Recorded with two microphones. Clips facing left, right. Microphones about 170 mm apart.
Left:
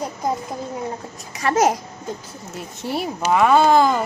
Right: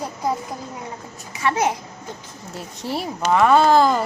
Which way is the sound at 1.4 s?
40° left (ahead or behind).